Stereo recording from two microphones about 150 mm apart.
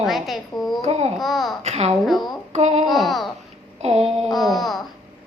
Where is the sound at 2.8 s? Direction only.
Centre (ahead or behind).